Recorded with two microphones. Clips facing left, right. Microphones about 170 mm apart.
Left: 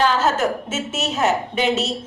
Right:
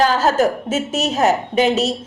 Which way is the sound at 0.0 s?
40° right (ahead or behind).